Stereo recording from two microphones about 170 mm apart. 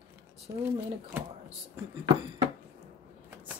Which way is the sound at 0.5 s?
20° right (ahead or behind).